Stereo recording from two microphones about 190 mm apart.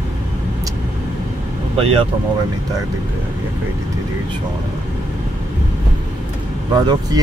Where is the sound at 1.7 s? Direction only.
30° right (ahead or behind).